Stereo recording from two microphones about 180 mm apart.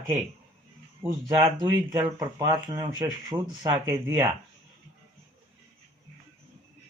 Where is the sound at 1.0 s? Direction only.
25° right (ahead or behind).